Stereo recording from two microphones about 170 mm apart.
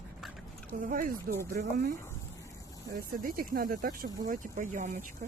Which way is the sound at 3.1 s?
55° right (ahead or behind).